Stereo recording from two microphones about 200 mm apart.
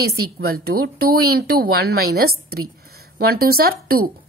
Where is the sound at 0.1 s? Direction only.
55° right (ahead or behind).